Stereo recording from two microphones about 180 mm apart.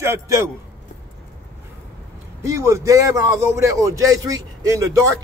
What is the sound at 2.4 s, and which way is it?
Speech, 15° right (ahead or behind).